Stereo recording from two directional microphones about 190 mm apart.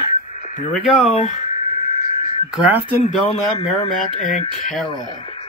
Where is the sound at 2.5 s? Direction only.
10° right (ahead or behind).